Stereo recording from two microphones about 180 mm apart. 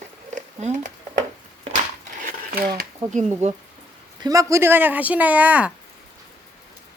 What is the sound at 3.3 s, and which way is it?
Speech, 40° right (ahead or behind).